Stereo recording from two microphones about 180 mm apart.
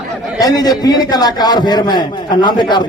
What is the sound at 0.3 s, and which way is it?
A man's voice, 20° left (ahead or behind).